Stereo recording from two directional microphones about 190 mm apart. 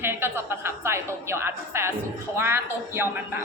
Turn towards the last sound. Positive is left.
turn(degrees=-10)  # may be behind; listen again after turning